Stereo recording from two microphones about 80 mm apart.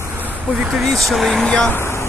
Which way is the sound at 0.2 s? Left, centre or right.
Right.